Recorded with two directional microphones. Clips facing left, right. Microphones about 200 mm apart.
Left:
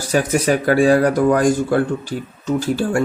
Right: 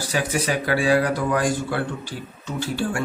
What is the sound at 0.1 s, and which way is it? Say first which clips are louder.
Speech: left 8 dB; 45° left (ahead or behind).